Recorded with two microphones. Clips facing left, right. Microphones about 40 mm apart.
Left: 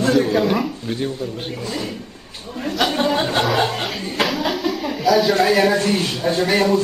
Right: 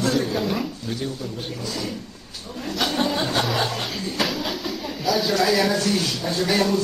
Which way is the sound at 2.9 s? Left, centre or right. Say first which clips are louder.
Left 2 dB; left.